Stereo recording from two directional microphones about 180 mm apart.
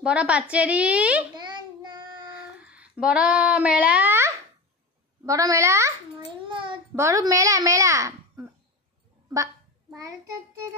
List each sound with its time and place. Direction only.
0.0 s a woman's voice: 5° right (ahead or behind)
1.3 s child singing: 25° right (ahead or behind)
2.3 s child singing: 5° right (ahead or behind)
5.2 s a woman's voice: 20° right (ahead or behind)
6.4 s a sound: 30° right (ahead or behind)
7.0 s a woman's voice: 20° right (ahead or behind)